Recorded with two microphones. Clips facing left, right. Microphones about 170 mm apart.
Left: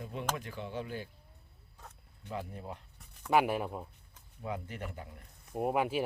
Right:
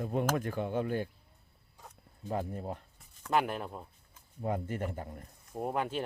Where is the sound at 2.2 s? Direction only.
40° right (ahead or behind).